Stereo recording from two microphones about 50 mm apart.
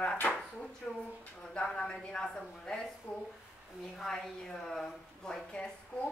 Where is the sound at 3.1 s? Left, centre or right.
Left.